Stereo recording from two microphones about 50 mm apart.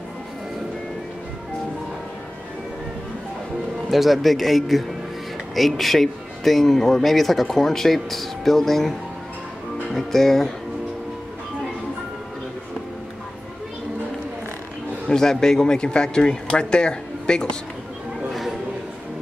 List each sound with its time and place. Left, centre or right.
3.9 s speech: centre
9.9 s speech: centre
15.0 s speech: centre
18.3 s a sound: centre